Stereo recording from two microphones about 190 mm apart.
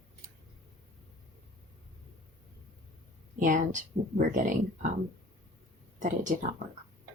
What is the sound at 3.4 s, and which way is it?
Speech, 40° right (ahead or behind).